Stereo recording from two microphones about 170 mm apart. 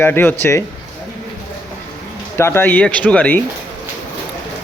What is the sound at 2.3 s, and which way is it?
A man's voice, 15° left (ahead or behind).